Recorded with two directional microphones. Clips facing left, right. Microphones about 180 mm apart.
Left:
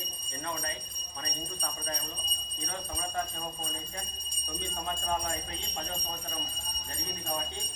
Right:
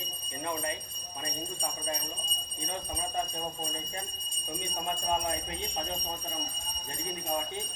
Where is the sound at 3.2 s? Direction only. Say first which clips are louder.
Right 2 dB; 20° right (ahead or behind).